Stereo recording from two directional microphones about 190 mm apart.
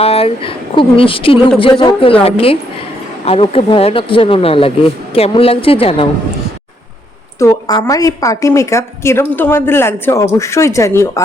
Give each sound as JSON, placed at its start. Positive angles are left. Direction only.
{"t": 0.0, "sound": "speech", "side_deg": 30}
{"t": 3.2, "sound": "speech", "side_deg": 30}
{"t": 7.3, "sound": "a woman's voice", "side_deg": 15}